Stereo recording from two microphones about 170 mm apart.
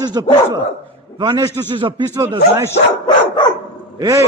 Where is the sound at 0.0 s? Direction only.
25° right (ahead or behind).